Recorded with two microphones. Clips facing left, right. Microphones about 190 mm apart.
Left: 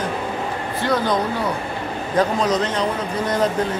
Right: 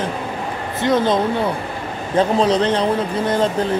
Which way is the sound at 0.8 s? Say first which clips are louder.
Right 4 dB; 20° right (ahead or behind).